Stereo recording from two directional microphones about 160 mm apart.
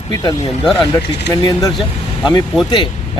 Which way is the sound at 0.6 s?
5° left (ahead or behind).